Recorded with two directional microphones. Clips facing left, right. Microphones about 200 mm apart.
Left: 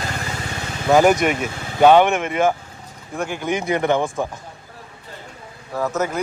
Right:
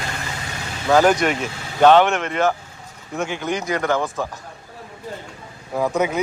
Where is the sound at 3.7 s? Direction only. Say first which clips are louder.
Left 3 dB; 20° left (ahead or behind).